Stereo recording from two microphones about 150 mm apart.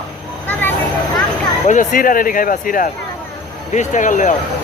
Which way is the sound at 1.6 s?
60° left (ahead or behind).